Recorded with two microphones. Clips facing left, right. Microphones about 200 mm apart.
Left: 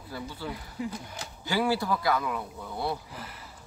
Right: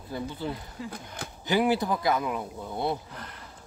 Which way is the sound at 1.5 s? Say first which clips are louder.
Right 3 dB; 20° right (ahead or behind).